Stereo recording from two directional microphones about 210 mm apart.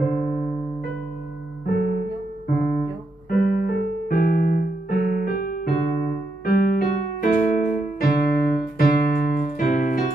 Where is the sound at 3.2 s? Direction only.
45° left (ahead or behind).